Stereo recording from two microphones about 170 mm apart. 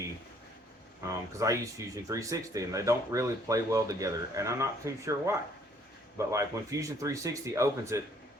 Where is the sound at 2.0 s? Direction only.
20° right (ahead or behind).